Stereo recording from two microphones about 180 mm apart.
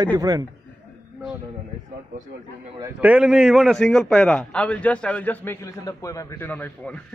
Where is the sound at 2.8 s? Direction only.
10° right (ahead or behind).